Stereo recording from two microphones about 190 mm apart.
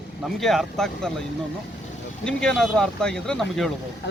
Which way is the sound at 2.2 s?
5° left (ahead or behind).